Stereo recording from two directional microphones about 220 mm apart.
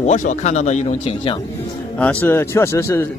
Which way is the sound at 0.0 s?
35° left (ahead or behind).